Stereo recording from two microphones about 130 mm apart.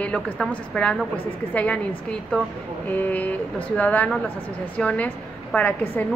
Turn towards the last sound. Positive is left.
turn(degrees=15)  # may be behind; listen again after turning